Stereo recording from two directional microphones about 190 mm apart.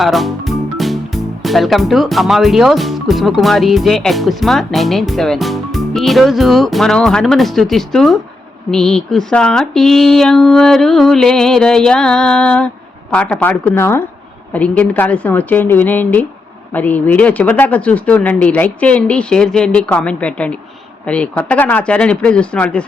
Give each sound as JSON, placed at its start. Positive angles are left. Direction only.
{"t": 0.0, "sound": "speech", "side_deg": 0}